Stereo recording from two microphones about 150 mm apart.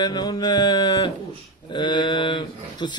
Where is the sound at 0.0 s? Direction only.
30° left (ahead or behind).